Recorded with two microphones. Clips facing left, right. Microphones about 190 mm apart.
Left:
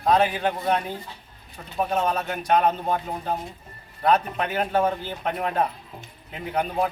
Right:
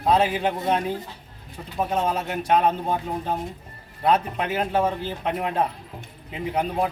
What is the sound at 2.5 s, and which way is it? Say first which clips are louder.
Speech: even; centre (ahead or behind).